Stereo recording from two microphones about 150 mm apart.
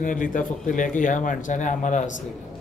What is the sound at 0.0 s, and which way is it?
A man's voice, 60° left (ahead or behind).